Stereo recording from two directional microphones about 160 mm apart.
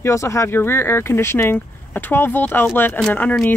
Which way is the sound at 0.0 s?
20° left (ahead or behind).